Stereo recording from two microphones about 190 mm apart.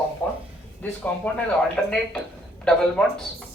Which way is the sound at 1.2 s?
10° left (ahead or behind).